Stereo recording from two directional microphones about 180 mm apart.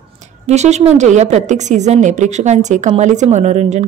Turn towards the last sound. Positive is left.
turn(degrees=-40)  # may be behind; listen again after turning